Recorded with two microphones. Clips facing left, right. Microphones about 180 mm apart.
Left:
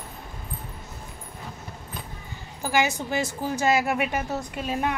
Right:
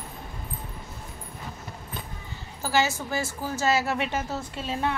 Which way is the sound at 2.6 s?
15° left (ahead or behind).